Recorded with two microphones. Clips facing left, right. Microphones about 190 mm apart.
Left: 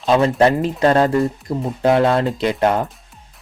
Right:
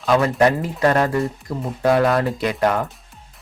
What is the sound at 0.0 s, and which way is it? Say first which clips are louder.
Speech: left 2 dB; 25° left (ahead or behind).